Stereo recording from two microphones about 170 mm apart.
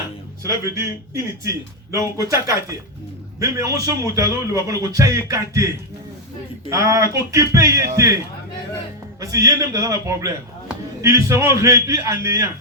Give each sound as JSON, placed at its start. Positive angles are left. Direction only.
{"t": 0.4, "sound": "a man's voice", "side_deg": -15}
{"t": 6.7, "sound": "speech", "side_deg": -20}
{"t": 9.2, "sound": "a man's voice", "side_deg": -20}